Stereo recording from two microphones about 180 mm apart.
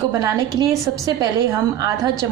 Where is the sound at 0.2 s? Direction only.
20° right (ahead or behind).